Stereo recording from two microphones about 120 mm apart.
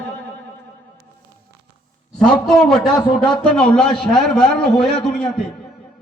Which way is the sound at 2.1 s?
5° left (ahead or behind).